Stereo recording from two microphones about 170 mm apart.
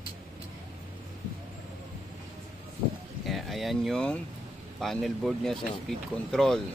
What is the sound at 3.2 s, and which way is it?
Speech, centre (ahead or behind).